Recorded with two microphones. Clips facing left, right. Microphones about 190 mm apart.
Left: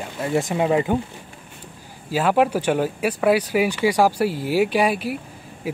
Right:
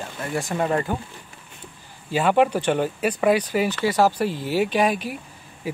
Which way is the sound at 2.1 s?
5° left (ahead or behind).